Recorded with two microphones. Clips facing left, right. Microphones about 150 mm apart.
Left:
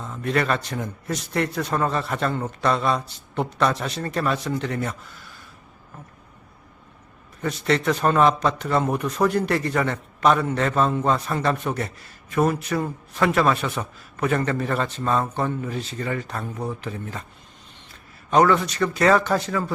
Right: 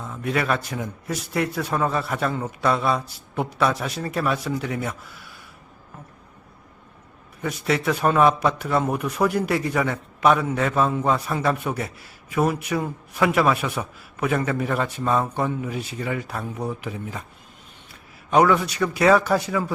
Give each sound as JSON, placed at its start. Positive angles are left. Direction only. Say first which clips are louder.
{"t": 0.0, "sound": "speech", "louder": "left 1 dB", "side_deg": -5}
{"t": 7.4, "sound": "a man's voice", "louder": "left 1 dB", "side_deg": -5}
{"t": 18.3, "sound": "a man's voice", "louder": "even", "side_deg": -10}